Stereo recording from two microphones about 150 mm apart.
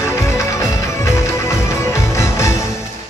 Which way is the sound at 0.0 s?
20° left (ahead or behind).